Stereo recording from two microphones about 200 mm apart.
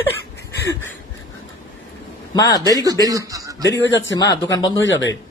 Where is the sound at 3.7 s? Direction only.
65° left (ahead or behind).